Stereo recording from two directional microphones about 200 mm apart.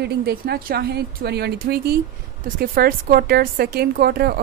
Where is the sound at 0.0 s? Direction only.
50° right (ahead or behind).